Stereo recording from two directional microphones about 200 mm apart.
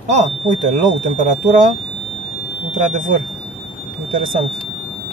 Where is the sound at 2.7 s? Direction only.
40° right (ahead or behind).